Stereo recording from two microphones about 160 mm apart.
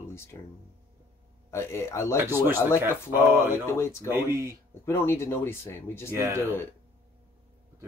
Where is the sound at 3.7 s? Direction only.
15° left (ahead or behind).